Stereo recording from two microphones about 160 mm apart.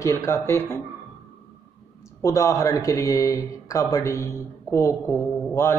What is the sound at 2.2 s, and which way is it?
A woman's voice, 20° left (ahead or behind).